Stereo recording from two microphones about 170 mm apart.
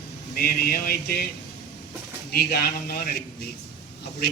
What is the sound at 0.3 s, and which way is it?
Speech, 60° left (ahead or behind).